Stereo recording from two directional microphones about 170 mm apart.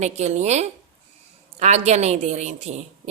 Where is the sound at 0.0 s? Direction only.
40° right (ahead or behind).